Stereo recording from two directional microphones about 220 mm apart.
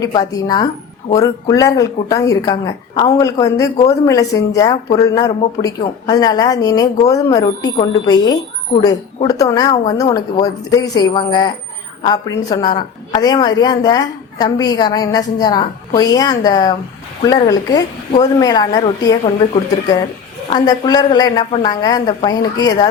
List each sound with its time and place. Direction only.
0.0 s speech: 15° left (ahead or behind)
20.5 s speech: 15° left (ahead or behind)